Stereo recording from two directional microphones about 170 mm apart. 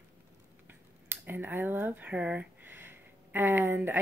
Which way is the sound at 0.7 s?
10° right (ahead or behind).